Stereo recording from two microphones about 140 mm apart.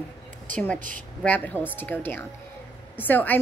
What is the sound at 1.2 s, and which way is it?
Speech, 10° left (ahead or behind).